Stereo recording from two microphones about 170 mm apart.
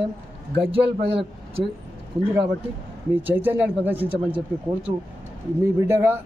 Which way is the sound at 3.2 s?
10° right (ahead or behind).